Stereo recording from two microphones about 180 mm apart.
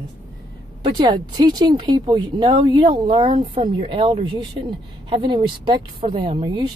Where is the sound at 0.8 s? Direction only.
25° right (ahead or behind).